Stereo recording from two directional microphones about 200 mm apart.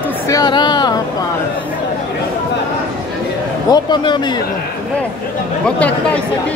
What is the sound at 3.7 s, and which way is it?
Speech, 20° left (ahead or behind).